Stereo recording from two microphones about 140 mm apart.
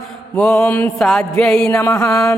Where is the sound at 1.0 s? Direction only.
Centre (ahead or behind).